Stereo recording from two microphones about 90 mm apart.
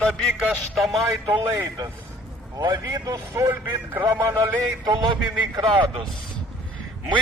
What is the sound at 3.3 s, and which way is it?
Speech, 30° right (ahead or behind).